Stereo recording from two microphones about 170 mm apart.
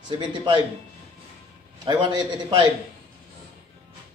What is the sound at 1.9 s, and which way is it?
Speech, 25° right (ahead or behind).